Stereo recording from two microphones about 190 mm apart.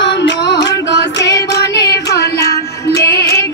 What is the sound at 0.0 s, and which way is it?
Music, 65° left (ahead or behind).